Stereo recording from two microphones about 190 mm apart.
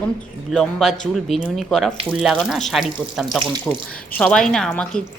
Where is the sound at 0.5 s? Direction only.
Centre (ahead or behind).